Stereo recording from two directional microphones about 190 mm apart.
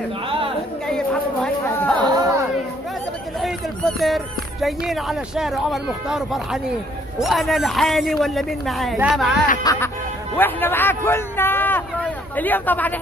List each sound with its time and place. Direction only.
0.8 s chatter: 5° left (ahead or behind)
2.0 s chatter: 20° right (ahead or behind)
3.3 s speech: centre (ahead or behind)
9.6 s music: 20° left (ahead or behind)
10.3 s speech: 10° left (ahead or behind)